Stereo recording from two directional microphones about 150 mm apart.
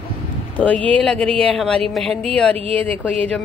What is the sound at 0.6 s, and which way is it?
A woman's voice, 10° left (ahead or behind).